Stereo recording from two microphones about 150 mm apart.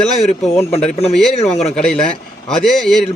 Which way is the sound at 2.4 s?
5° left (ahead or behind).